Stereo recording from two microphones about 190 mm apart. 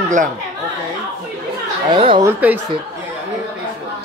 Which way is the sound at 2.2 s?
10° right (ahead or behind).